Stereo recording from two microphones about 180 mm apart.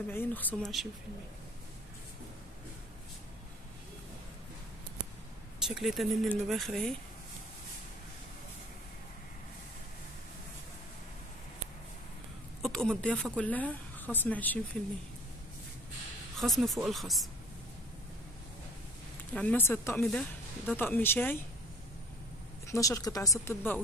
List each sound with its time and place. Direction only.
0.1 s speech: 10° left (ahead or behind)
5.8 s speech: centre (ahead or behind)
12.6 s a woman's voice: centre (ahead or behind)
16.3 s speech: centre (ahead or behind)
19.3 s speech: 10° left (ahead or behind)
22.7 s speech: 20° left (ahead or behind)